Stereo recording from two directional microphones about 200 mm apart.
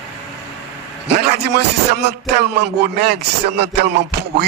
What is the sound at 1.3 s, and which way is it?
Speech, 55° right (ahead or behind).